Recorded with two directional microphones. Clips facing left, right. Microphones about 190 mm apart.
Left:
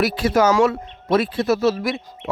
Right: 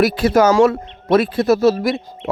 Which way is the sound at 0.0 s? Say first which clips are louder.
Right 4 dB; 45° right (ahead or behind).